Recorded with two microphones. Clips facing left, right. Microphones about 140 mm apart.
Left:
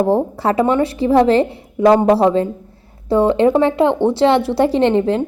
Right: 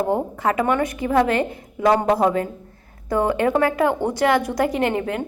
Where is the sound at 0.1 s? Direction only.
35° left (ahead or behind).